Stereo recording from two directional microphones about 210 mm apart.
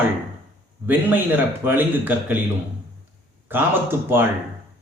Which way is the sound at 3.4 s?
10° right (ahead or behind).